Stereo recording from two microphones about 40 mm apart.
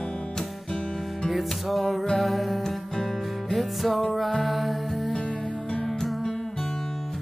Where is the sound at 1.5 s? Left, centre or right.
Centre.